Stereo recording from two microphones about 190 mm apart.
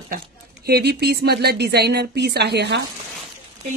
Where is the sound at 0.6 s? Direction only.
55° right (ahead or behind).